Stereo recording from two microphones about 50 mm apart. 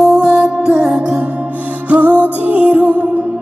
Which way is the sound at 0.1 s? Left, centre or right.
Right.